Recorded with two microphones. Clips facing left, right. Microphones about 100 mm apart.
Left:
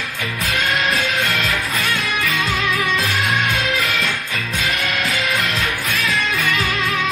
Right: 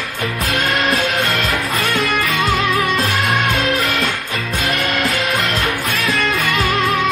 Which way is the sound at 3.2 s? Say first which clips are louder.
Right 3 dB; 55° right (ahead or behind).